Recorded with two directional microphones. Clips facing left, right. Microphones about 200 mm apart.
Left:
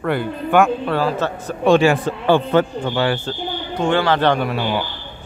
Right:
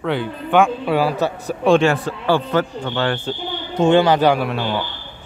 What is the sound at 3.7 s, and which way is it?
Speech, 20° right (ahead or behind).